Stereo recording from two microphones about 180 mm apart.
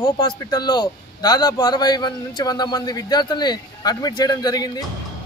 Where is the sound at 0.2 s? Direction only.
20° left (ahead or behind).